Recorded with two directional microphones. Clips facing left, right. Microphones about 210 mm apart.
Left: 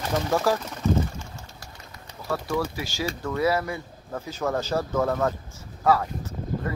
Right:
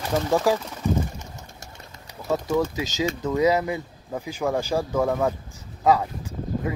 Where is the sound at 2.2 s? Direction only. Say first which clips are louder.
Right 4 dB; 20° right (ahead or behind).